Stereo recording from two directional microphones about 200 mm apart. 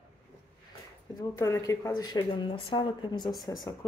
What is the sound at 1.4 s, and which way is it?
A woman's voice, 15° left (ahead or behind).